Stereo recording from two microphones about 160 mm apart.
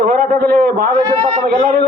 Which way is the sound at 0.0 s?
60° right (ahead or behind).